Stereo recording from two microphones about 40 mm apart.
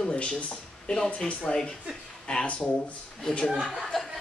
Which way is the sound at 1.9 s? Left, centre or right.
Right.